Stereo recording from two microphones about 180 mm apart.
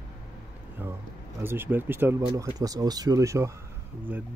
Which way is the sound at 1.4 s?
10° right (ahead or behind).